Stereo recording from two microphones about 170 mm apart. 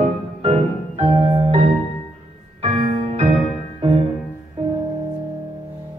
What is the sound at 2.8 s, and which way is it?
Music, 35° right (ahead or behind).